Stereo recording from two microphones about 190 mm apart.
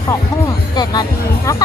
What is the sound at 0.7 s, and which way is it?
Speech, 20° left (ahead or behind).